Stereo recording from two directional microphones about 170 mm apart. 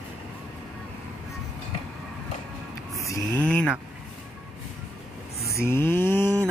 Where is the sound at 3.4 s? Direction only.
5° left (ahead or behind).